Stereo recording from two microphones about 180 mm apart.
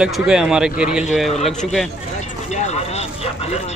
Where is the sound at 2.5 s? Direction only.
40° left (ahead or behind).